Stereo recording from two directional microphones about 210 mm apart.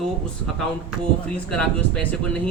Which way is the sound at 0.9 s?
5° left (ahead or behind).